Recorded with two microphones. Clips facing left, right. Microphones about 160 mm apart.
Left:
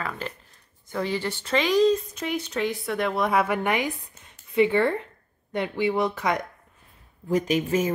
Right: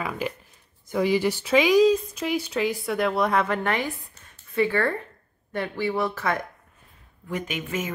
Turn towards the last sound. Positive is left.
turn(degrees=35)  # may be behind; listen again after turning